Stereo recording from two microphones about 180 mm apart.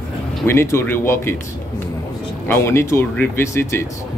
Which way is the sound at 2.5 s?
15° left (ahead or behind).